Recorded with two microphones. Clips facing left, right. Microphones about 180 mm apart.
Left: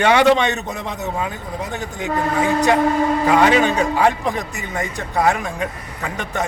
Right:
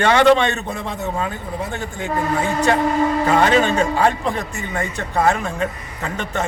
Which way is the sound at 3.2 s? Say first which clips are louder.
Left 2 dB; 10° left (ahead or behind).